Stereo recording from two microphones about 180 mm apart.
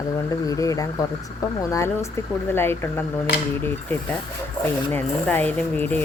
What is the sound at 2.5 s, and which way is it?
Speech, 15° left (ahead or behind).